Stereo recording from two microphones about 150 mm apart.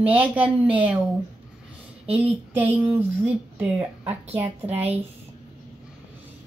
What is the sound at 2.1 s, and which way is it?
Speech, 10° right (ahead or behind).